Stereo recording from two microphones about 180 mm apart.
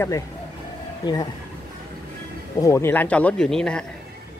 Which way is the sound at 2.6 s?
15° left (ahead or behind).